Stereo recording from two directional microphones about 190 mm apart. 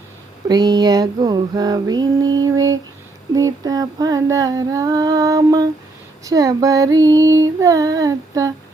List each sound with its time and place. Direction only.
0.4 s female singing: 20° right (ahead or behind)